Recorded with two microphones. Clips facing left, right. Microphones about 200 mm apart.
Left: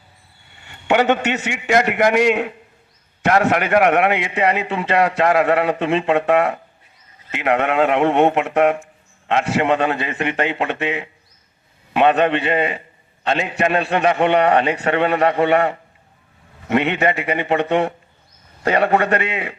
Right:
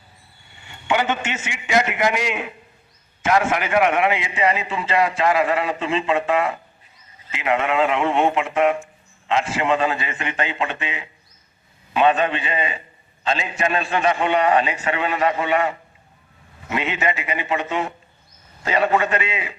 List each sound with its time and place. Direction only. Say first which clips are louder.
0.9 s a man's voice: left 6 dB; 60° left (ahead or behind)